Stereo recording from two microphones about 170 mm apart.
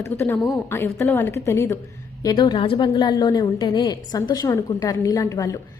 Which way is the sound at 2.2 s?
25° left (ahead or behind).